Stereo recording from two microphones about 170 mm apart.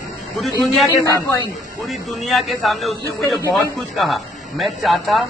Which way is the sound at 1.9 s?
Centre (ahead or behind).